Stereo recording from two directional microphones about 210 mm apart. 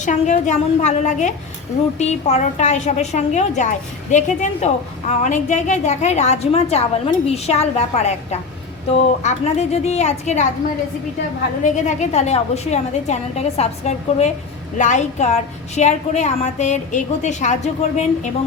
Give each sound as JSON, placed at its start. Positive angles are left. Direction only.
{"t": 0.0, "sound": "a woman's voice", "side_deg": 35}
{"t": 11.6, "sound": "a woman's voice", "side_deg": 35}